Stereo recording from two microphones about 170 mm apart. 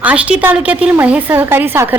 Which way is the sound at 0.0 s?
10° right (ahead or behind).